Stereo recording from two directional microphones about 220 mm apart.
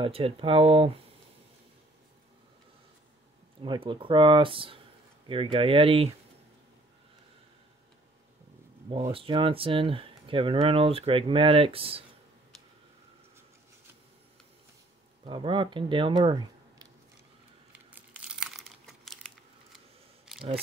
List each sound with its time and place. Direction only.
0.0 s speech: 25° right (ahead or behind)
3.6 s speech: 20° right (ahead or behind)
8.9 s speech: 25° right (ahead or behind)
15.2 s speech: 25° right (ahead or behind)
16.2 s a sound: 20° right (ahead or behind)
17.7 s crumpling: 5° right (ahead or behind)
20.3 s camera: 5° right (ahead or behind)